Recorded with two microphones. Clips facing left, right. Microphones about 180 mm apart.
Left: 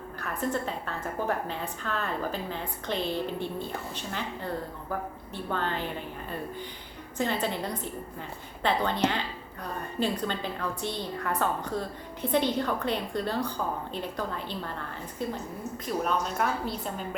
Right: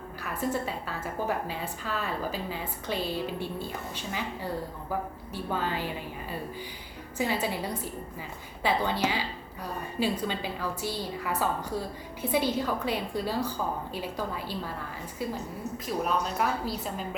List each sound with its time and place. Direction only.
0.2 s a woman's voice: 5° right (ahead or behind)
7.2 s a woman's voice: 10° right (ahead or behind)
15.9 s a woman's voice: centre (ahead or behind)